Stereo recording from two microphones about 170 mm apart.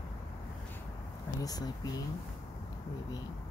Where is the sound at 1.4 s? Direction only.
20° left (ahead or behind).